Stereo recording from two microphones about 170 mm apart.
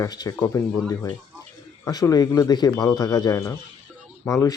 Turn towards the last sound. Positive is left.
turn(degrees=15)  # may be behind; listen again after turning